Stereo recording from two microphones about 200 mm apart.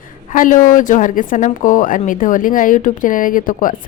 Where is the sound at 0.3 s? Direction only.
40° left (ahead or behind).